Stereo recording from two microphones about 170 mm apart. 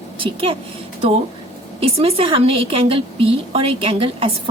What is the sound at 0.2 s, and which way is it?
Speech, 35° right (ahead or behind).